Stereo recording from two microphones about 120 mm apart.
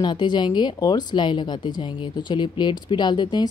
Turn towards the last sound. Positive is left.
turn(degrees=40)  # may be behind; listen again after turning